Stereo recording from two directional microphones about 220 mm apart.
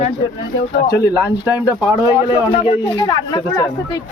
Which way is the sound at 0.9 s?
50° left (ahead or behind).